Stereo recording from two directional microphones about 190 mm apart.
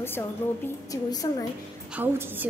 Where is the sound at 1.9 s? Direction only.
10° right (ahead or behind).